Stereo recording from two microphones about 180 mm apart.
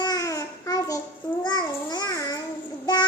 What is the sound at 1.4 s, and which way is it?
Babbling, 20° left (ahead or behind).